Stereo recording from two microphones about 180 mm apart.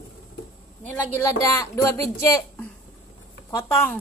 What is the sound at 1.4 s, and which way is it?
Speech, 20° left (ahead or behind).